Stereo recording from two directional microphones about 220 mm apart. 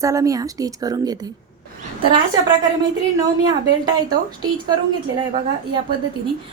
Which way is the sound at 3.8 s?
20° right (ahead or behind).